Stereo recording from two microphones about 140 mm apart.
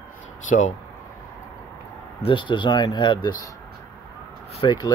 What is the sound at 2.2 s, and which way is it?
Speech, 35° left (ahead or behind).